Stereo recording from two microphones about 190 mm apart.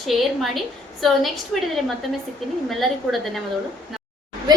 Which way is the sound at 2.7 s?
Centre (ahead or behind).